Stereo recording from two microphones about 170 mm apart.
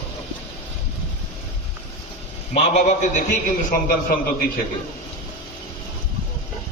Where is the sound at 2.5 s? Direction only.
40° left (ahead or behind).